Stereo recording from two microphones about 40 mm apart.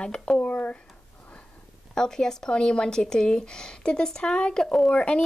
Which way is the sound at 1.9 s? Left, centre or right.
Centre.